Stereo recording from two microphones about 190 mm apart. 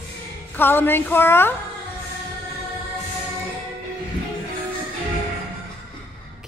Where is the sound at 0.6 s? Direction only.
10° left (ahead or behind).